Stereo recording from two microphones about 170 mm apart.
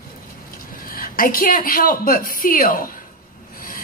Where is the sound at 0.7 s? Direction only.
55° left (ahead or behind).